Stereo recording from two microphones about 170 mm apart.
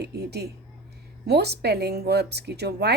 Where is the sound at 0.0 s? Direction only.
75° right (ahead or behind).